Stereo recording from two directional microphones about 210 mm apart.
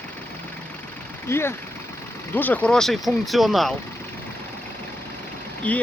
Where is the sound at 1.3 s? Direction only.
10° left (ahead or behind).